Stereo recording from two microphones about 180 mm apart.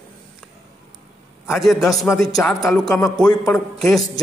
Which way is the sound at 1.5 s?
Centre (ahead or behind).